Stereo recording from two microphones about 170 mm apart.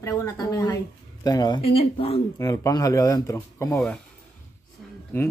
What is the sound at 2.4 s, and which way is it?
Speech, 20° left (ahead or behind).